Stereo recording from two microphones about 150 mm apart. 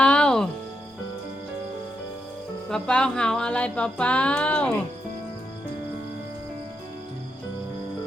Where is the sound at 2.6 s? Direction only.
5° left (ahead or behind).